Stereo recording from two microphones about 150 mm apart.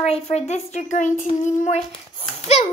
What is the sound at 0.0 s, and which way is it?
A child's voice, 45° left (ahead or behind).